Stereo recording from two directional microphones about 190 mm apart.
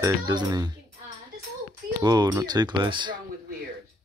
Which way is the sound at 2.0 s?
20° right (ahead or behind).